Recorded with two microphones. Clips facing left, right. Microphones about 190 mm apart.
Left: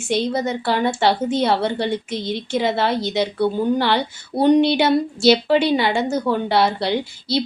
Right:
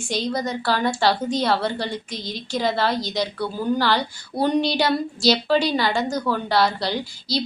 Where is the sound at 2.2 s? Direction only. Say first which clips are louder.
Left 7 dB; 60° left (ahead or behind).